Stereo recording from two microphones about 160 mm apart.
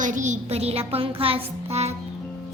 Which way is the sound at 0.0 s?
50° right (ahead or behind).